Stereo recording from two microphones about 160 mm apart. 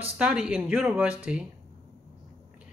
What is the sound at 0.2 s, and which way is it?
A man's voice, 5° right (ahead or behind).